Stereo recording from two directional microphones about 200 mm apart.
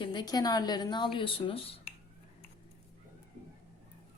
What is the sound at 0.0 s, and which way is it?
Speech, 20° left (ahead or behind).